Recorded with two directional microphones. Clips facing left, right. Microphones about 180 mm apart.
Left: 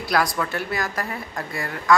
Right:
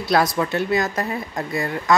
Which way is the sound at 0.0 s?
25° right (ahead or behind).